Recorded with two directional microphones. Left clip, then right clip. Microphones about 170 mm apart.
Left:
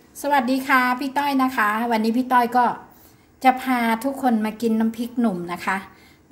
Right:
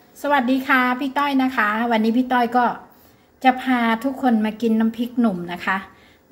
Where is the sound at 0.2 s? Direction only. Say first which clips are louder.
Right 1 dB; 5° left (ahead or behind).